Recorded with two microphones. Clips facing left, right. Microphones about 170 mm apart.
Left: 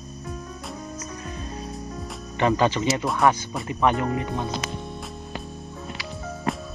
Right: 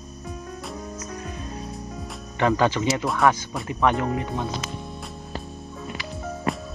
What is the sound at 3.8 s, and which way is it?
Speech, 15° left (ahead or behind).